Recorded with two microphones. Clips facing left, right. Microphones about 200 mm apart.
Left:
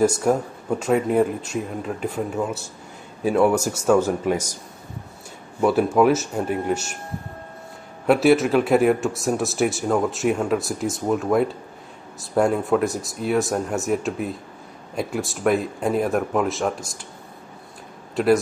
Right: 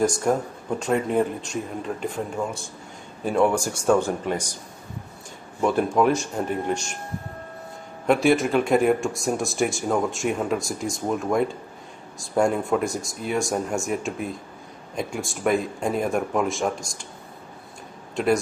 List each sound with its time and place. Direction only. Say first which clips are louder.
0.0 s a man's voice: left 3 dB; 5° left (ahead or behind)
5.6 s a man's voice: left 3 dB; 5° left (ahead or behind)
8.1 s speech: left 3 dB; 5° left (ahead or behind)
18.1 s speech: left 4 dB; centre (ahead or behind)